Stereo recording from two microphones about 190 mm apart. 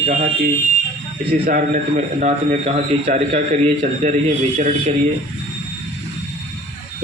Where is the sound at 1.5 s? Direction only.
45° right (ahead or behind).